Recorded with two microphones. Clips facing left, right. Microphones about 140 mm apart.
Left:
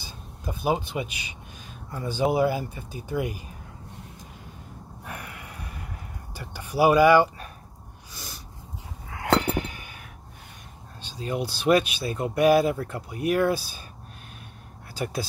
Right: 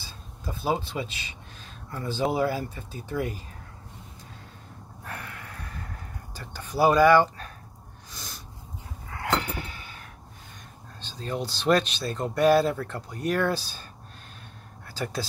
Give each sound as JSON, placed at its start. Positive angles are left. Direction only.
{"t": 0.0, "sound": "speech", "side_deg": 15}
{"t": 5.0, "sound": "gasp", "side_deg": 15}
{"t": 8.1, "sound": "snort", "side_deg": 5}
{"t": 9.1, "sound": "a sound", "side_deg": 20}
{"t": 11.0, "sound": "speech", "side_deg": 10}